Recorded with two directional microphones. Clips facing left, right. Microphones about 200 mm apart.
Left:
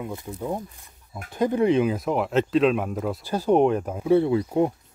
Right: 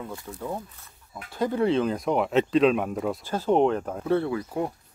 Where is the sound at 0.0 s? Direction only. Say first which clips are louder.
Left 4 dB; 20° left (ahead or behind).